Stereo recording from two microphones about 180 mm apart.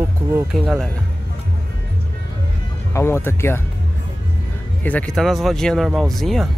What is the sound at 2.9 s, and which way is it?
Speech, 15° left (ahead or behind).